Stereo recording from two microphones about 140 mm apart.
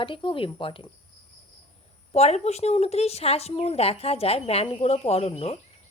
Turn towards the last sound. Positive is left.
turn(degrees=45)  # may be behind; listen again after turning